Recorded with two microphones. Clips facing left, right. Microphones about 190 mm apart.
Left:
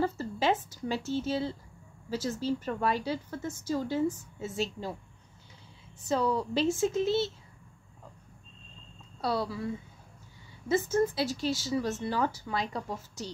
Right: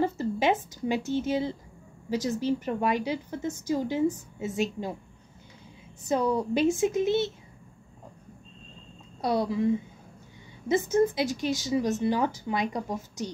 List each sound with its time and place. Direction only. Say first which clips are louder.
0.0 s a woman's voice: right 3 dB; 15° right (ahead or behind)
6.0 s a woman's voice: right 3 dB; 15° right (ahead or behind)
9.2 s a woman's voice: right 5 dB; 20° right (ahead or behind)
10.7 s a woman's voice: right 3 dB; 15° right (ahead or behind)